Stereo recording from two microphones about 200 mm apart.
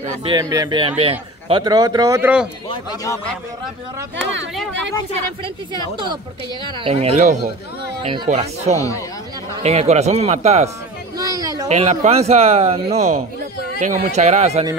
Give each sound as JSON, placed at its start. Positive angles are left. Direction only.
{"t": 0.0, "sound": "speech", "side_deg": -25}
{"t": 2.7, "sound": "a man's voice", "side_deg": 15}
{"t": 6.6, "sound": "speech", "side_deg": -25}
{"t": 11.1, "sound": "a sound", "side_deg": -20}
{"t": 11.7, "sound": "speech", "side_deg": -35}